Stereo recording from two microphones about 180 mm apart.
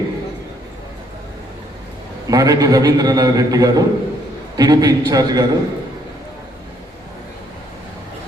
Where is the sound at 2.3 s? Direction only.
20° right (ahead or behind).